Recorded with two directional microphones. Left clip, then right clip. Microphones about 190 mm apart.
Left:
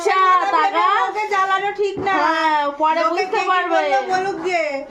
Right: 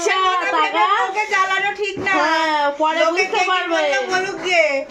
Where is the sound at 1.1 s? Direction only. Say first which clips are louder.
Even; 65° left (ahead or behind).